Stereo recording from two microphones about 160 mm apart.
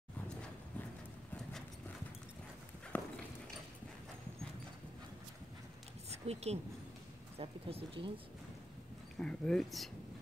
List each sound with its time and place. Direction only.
2.9 s clip-clop: 10° left (ahead or behind)
6.0 s speech: 40° right (ahead or behind)
9.1 s speech: 5° left (ahead or behind)